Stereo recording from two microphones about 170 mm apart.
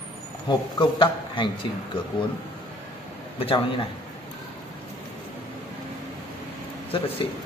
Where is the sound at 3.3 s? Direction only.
35° left (ahead or behind).